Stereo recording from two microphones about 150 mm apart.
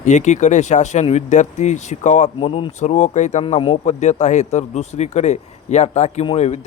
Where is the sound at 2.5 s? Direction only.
35° left (ahead or behind).